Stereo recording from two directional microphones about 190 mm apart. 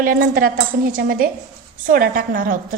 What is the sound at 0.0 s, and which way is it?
A woman's voice, 50° right (ahead or behind).